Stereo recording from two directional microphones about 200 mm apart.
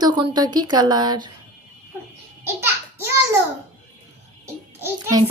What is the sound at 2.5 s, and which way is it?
Babbling, 10° right (ahead or behind).